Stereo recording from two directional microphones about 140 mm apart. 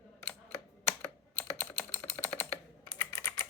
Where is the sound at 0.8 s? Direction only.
15° left (ahead or behind).